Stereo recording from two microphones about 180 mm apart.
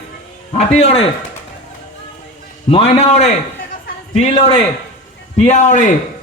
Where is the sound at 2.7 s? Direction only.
35° left (ahead or behind).